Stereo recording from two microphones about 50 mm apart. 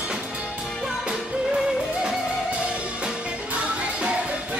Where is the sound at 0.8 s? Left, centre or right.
Centre.